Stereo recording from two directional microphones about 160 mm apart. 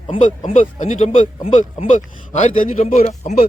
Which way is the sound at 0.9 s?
50° left (ahead or behind).